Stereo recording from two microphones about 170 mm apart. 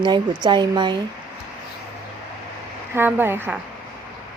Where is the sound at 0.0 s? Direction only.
25° right (ahead or behind).